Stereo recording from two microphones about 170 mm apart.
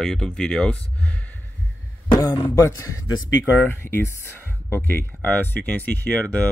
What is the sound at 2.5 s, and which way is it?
Speech, 20° left (ahead or behind).